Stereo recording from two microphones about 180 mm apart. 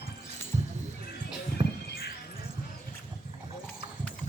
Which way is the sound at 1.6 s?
25° right (ahead or behind).